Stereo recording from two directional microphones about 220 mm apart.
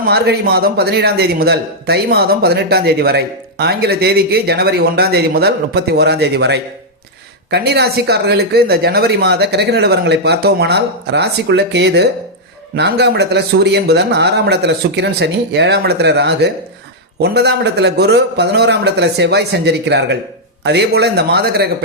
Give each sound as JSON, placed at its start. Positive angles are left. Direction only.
{"t": 0.0, "sound": "a man's voice", "side_deg": -45}